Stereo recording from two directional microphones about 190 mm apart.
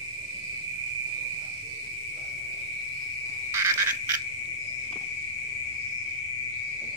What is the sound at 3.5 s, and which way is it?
Frog, 15° right (ahead or behind).